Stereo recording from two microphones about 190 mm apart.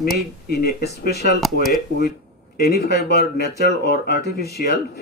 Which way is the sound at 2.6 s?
55° left (ahead or behind).